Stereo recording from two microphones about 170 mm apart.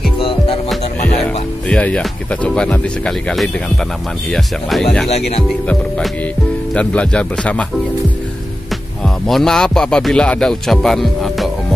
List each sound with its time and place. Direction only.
0.2 s music: 35° left (ahead or behind)
0.7 s music: centre (ahead or behind)
1.7 s speech: 5° left (ahead or behind)
6.7 s speech: 5° left (ahead or behind)
9.3 s speech: 5° left (ahead or behind)